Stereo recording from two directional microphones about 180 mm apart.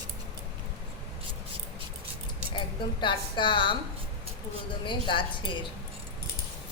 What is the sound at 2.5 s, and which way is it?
A woman's voice, 25° left (ahead or behind).